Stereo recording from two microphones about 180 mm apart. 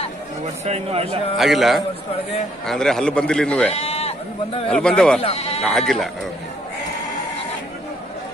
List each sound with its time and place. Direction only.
0.7 s a man's voice: 35° right (ahead or behind)
1.4 s a man's voice: centre (ahead or behind)
3.7 s sheep: 35° left (ahead or behind)
4.6 s a man's voice: 5° left (ahead or behind)
5.2 s speech: 35° left (ahead or behind)
5.6 s a man's voice: centre (ahead or behind)